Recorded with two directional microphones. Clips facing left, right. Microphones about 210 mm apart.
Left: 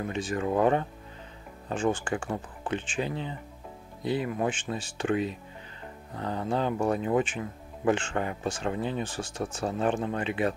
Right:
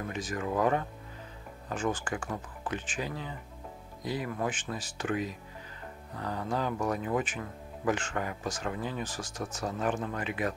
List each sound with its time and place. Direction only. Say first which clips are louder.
0.1 s speech: left 5 dB; 30° left (ahead or behind)